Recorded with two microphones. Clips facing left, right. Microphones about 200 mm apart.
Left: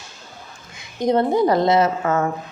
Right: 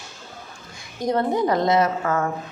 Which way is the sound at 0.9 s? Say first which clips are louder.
Left 4 dB; 25° left (ahead or behind).